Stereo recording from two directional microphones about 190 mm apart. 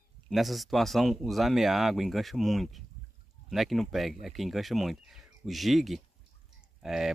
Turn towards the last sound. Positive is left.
turn(degrees=0)  # may be behind; listen again after turning